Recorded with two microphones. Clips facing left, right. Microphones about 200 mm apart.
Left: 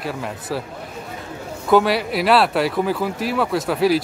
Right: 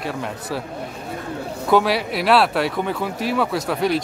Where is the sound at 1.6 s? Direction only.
Centre (ahead or behind).